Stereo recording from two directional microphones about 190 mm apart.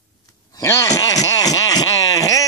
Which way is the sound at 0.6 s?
15° left (ahead or behind).